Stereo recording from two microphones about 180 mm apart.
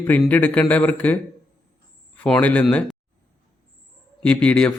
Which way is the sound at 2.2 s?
5° left (ahead or behind).